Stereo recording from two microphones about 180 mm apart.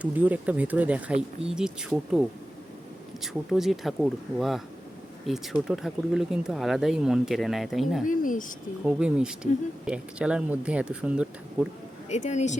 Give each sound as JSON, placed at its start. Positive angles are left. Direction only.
{"t": 0.0, "sound": "speech", "side_deg": -10}
{"t": 3.5, "sound": "speech", "side_deg": 0}
{"t": 8.0, "sound": "speech", "side_deg": 45}
{"t": 8.8, "sound": "speech", "side_deg": -5}
{"t": 12.0, "sound": "speech", "side_deg": 40}